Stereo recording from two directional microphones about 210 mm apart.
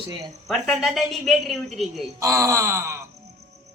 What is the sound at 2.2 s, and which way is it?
Groan, 15° right (ahead or behind).